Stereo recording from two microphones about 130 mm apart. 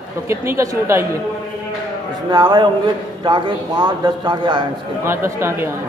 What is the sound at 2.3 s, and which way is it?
A man's voice, 35° right (ahead or behind).